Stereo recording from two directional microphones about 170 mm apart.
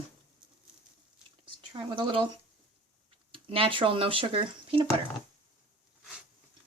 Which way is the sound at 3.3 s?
30° right (ahead or behind).